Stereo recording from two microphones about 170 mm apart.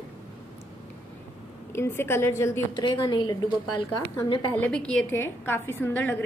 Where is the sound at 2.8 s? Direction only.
25° left (ahead or behind).